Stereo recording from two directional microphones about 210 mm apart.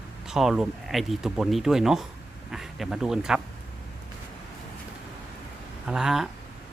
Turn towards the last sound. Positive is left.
turn(degrees=0)  # may be behind; listen again after turning